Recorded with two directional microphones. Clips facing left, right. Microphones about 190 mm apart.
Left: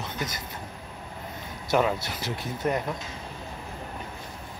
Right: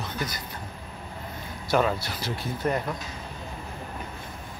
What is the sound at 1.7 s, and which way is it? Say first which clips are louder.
Speech: even; 20° left (ahead or behind).